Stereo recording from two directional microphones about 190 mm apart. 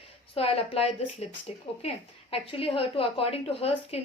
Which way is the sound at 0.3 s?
30° left (ahead or behind).